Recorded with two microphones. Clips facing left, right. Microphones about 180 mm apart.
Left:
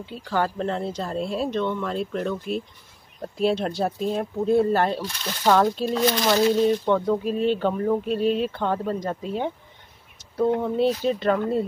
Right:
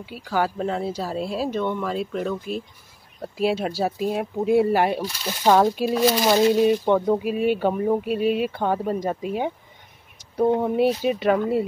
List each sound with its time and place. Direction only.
0.0 s speech: 10° right (ahead or behind)